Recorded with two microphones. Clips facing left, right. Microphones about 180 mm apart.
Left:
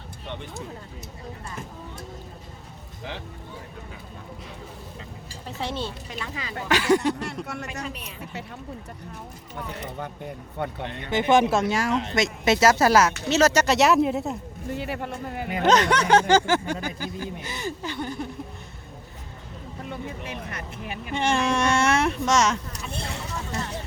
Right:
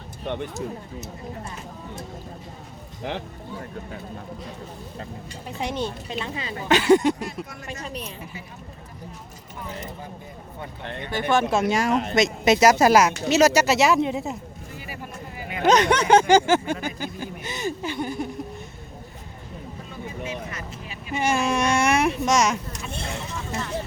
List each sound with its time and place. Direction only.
0.3 s speech: 55° right (ahead or behind)
5.5 s a sound: 15° right (ahead or behind)
7.4 s speech: 70° left (ahead or behind)
7.9 s speech: 35° right (ahead or behind)
10.6 s speech: 65° left (ahead or behind)
11.1 s speech: 20° left (ahead or behind)
11.6 s speech: 20° right (ahead or behind); by 14.3 s centre (ahead or behind)
14.7 s music: 65° left (ahead or behind)
15.6 s a sound: 15° right (ahead or behind)
16.8 s speech: 20° right (ahead or behind)
19.9 s vehicle: 60° left (ahead or behind)
21.1 s speech: 5° right (ahead or behind)